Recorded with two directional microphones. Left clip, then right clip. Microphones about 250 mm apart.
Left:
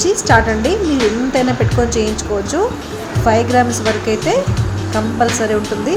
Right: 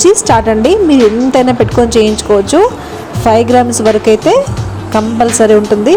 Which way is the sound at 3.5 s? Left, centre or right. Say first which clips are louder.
Right 5 dB; right.